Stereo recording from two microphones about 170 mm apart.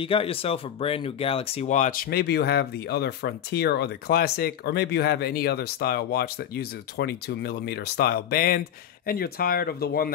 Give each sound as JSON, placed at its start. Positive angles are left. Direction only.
{"t": 0.0, "sound": "speech", "side_deg": 35}